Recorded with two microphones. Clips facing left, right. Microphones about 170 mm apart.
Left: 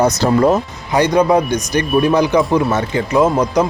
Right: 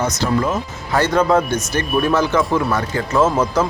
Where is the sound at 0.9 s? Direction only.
15° left (ahead or behind).